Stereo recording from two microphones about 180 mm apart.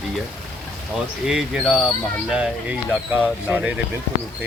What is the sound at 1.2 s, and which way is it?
Speech, 5° right (ahead or behind).